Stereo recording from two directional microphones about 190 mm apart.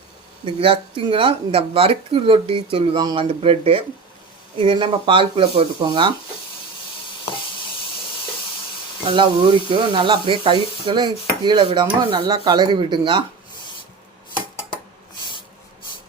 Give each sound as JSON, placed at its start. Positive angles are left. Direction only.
{"t": 0.4, "sound": "speech", "side_deg": -30}
{"t": 9.1, "sound": "speech", "side_deg": -25}